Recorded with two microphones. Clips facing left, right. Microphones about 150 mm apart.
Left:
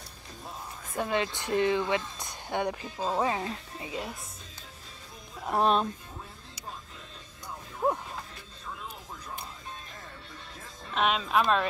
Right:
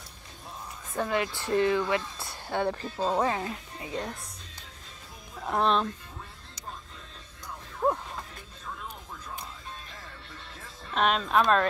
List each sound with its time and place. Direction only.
0.9 s speech: 20° left (ahead or behind)
3.3 s speech: 20° left (ahead or behind)
3.9 s speech: 5° left (ahead or behind)
5.4 s music: 10° left (ahead or behind)
7.8 s music: 10° left (ahead or behind)
10.9 s speech: 5° left (ahead or behind)